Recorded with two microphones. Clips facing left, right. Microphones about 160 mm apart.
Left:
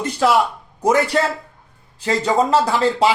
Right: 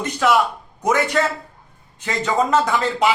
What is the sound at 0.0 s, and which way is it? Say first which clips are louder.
Speech: left 1 dB; 30° left (ahead or behind).